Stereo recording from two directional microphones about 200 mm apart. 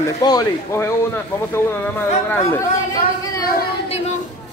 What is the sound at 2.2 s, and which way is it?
Speech, 10° left (ahead or behind).